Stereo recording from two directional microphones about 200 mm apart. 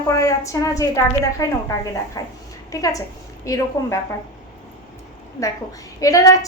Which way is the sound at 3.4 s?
15° left (ahead or behind).